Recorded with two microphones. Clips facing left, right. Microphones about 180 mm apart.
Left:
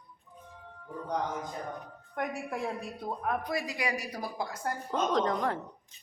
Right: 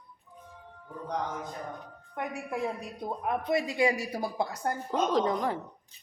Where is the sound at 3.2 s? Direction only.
20° right (ahead or behind).